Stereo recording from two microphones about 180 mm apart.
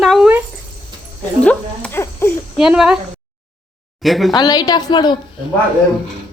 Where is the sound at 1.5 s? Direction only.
10° left (ahead or behind).